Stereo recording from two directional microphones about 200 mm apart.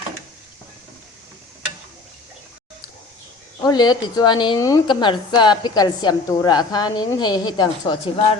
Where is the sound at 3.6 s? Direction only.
20° left (ahead or behind).